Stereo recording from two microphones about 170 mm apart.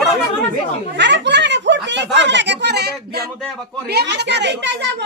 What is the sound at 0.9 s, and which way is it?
Speech, 90° right.